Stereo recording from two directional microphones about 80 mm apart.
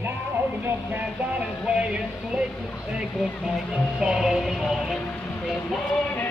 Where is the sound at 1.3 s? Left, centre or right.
Centre.